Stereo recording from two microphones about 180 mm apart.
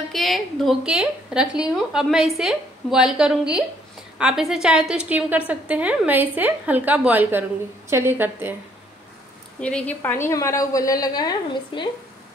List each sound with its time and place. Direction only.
0.1 s a woman's voice: centre (ahead or behind)
9.6 s a woman's voice: 5° left (ahead or behind); by 11.9 s 25° left (ahead or behind)